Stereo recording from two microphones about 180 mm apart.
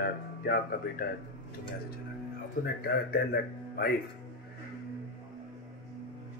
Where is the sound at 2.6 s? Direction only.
60° left (ahead or behind).